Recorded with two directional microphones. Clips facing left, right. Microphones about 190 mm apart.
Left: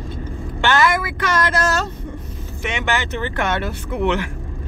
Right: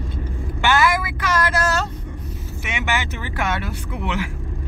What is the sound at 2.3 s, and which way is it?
Vehicle, 5° right (ahead or behind).